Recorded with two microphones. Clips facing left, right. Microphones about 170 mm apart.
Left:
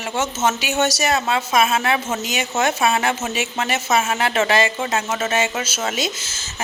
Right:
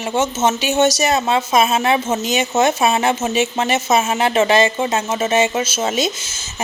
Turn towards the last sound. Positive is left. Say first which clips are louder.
# right 5 dB
turn(degrees=-20)  # may be behind; listen again after turning